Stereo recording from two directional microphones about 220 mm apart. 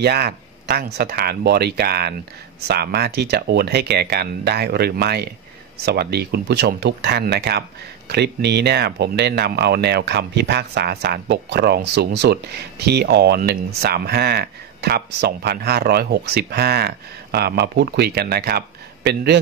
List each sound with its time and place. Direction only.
0.0 s speech: 45° right (ahead or behind)